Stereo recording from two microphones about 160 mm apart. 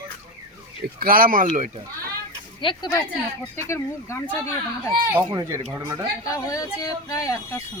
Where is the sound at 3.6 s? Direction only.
20° left (ahead or behind).